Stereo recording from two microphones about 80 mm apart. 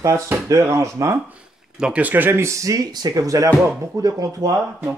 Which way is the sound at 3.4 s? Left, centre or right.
Right.